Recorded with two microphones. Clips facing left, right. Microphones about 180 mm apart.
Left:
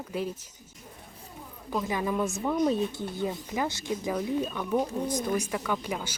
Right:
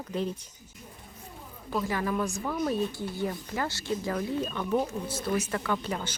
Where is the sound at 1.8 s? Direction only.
15° left (ahead or behind).